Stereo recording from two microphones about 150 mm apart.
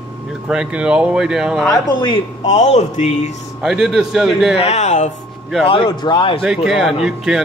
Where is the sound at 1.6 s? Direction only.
30° left (ahead or behind).